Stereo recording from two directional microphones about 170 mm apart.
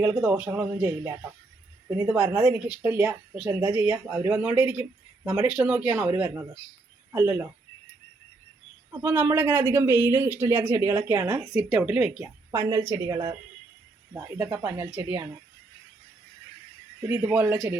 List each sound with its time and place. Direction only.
0.0 s speech: 5° right (ahead or behind)
2.3 s speech: 5° right (ahead or behind)
8.9 s speech: 15° right (ahead or behind)
12.5 s a woman's voice: 15° right (ahead or behind)
17.1 s speech: 10° right (ahead or behind)